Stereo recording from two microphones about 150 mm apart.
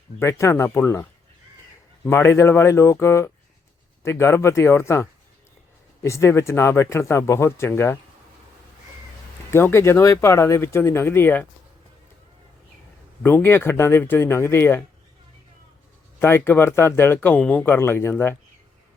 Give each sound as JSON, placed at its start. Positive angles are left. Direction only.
{"t": 0.2, "sound": "speech", "side_deg": 20}
{"t": 2.0, "sound": "speech", "side_deg": 15}
{"t": 9.5, "sound": "speech", "side_deg": 15}
{"t": 13.2, "sound": "speech", "side_deg": 15}
{"t": 16.2, "sound": "speech", "side_deg": 15}